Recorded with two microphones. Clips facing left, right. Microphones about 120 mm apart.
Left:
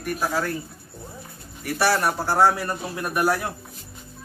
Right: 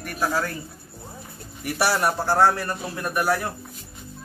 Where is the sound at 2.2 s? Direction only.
10° left (ahead or behind).